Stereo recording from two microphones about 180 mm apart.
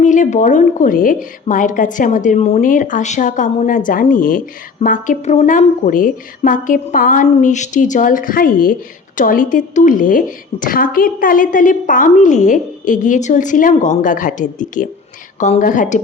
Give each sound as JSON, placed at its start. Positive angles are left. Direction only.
{"t": 0.0, "sound": "a woman's voice", "side_deg": 45}